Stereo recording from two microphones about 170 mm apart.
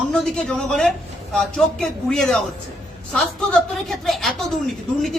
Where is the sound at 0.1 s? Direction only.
5° left (ahead or behind).